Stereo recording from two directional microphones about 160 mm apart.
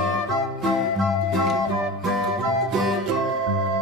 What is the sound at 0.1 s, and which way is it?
Music, centre (ahead or behind).